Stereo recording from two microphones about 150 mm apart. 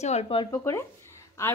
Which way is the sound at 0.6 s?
20° left (ahead or behind).